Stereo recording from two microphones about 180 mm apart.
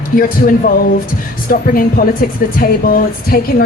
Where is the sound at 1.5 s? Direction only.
55° left (ahead or behind).